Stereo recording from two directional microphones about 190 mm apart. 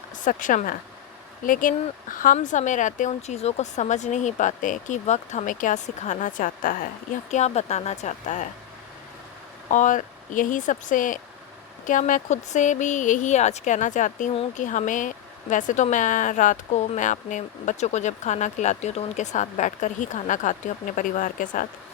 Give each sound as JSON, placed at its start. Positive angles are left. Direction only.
{"t": 0.3, "sound": "speech", "side_deg": 45}
{"t": 9.6, "sound": "speech", "side_deg": 40}